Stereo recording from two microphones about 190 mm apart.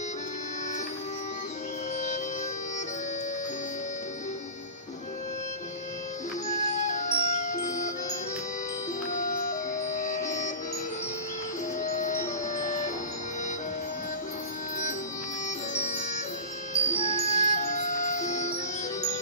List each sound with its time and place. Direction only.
6.4 s music: 40° left (ahead or behind)
9.1 s music: 40° left (ahead or behind)
11.8 s music: 40° left (ahead or behind)
15.7 s music: 40° left (ahead or behind)